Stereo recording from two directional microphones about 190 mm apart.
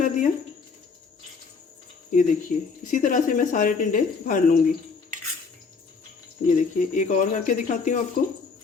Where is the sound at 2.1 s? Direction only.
40° left (ahead or behind).